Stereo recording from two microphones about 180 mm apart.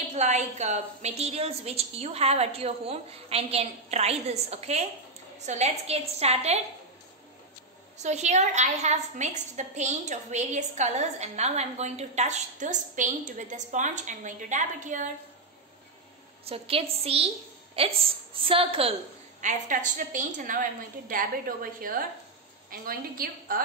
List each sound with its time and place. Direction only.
0.1 s a woman's voice: 40° right (ahead or behind)
8.0 s a woman's voice: 40° right (ahead or behind)
16.4 s a woman's voice: 30° right (ahead or behind)
19.4 s a woman's voice: 45° right (ahead or behind)